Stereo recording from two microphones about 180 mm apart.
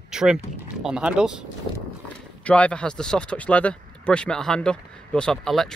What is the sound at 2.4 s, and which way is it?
Speech, 5° left (ahead or behind).